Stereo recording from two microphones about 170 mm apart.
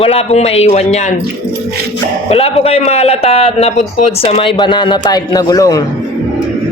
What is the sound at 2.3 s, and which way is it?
Speech, 35° left (ahead or behind).